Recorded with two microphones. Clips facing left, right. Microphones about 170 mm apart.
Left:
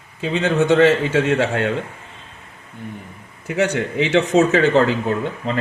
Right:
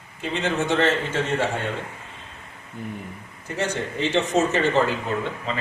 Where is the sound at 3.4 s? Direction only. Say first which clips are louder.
Left 7 dB; 85° left.